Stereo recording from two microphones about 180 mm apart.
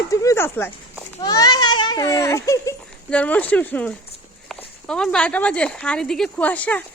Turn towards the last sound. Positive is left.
turn(degrees=10)  # may be behind; listen again after turning